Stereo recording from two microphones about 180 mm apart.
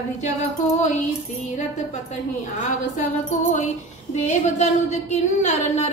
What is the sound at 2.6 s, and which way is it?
A woman's voice, 40° left (ahead or behind).